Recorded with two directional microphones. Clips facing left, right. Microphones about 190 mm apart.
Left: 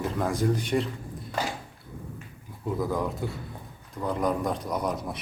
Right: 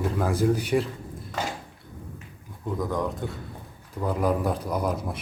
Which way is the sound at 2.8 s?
5° left (ahead or behind).